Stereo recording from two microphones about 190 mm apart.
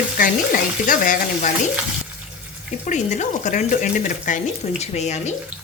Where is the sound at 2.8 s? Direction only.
40° left (ahead or behind).